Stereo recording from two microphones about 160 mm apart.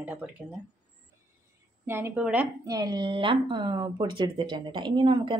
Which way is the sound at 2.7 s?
25° right (ahead or behind).